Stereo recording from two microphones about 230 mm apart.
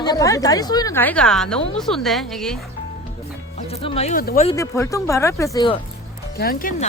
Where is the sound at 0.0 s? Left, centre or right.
Centre.